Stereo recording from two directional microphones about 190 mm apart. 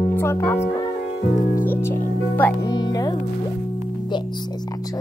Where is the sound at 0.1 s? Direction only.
15° left (ahead or behind).